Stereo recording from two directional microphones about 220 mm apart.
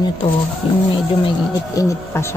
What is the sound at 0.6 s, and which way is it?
Speech, 25° left (ahead or behind).